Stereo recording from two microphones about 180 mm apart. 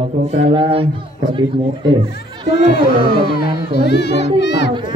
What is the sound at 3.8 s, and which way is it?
Speech, 65° left (ahead or behind).